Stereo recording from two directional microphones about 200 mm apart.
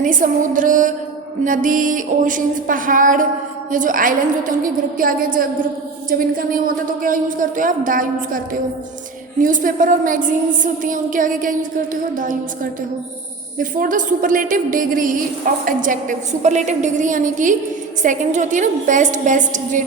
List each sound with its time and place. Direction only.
0.0 s a woman's voice: 40° right (ahead or behind)
9.4 s a woman's voice: 40° right (ahead or behind)
13.6 s a woman's voice: 40° right (ahead or behind)